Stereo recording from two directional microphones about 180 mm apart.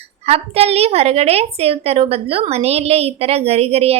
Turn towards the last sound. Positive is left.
turn(degrees=-35)  # may be behind; listen again after turning